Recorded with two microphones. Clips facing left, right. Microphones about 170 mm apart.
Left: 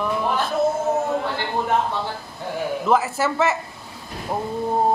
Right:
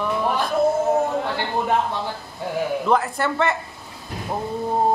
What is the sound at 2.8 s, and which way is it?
Speech, 5° left (ahead or behind).